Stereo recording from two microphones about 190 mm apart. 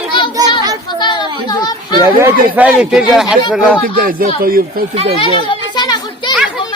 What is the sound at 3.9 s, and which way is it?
Speech, 50° right (ahead or behind).